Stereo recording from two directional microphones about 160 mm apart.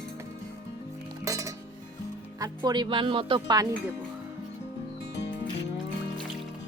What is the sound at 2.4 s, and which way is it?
Speech, 20° right (ahead or behind).